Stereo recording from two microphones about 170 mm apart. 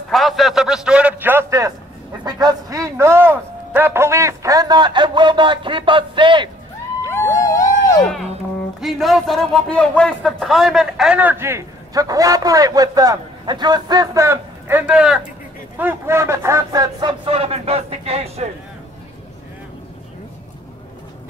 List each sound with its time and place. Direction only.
0.1 s a man's voice: centre (ahead or behind); by 6.5 s 30° right (ahead or behind)
7.1 s vehicle: 15° left (ahead or behind)
8.8 s a man's voice: centre (ahead or behind); by 18.5 s 35° right (ahead or behind)